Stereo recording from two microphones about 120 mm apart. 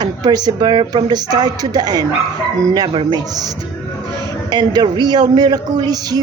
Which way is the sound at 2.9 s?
50° right (ahead or behind).